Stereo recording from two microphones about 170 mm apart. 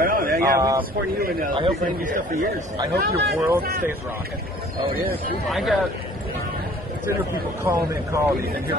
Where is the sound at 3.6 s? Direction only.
60° right (ahead or behind).